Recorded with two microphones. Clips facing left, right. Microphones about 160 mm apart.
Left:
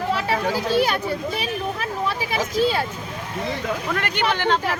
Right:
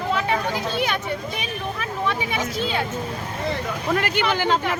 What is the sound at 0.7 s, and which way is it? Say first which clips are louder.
Speech: left 4 dB; 40° left (ahead or behind).